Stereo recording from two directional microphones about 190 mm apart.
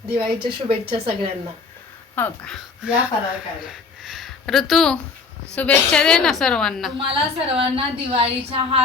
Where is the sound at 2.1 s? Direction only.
10° left (ahead or behind).